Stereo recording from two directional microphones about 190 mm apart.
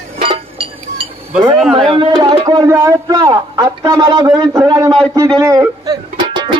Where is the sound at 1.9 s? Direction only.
25° right (ahead or behind).